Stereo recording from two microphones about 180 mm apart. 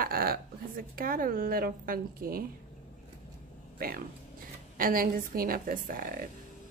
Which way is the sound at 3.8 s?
55° right (ahead or behind).